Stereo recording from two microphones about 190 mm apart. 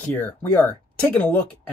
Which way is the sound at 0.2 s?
10° left (ahead or behind).